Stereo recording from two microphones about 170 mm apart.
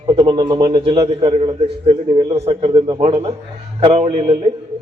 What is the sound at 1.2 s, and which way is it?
A man's voice, 35° right (ahead or behind).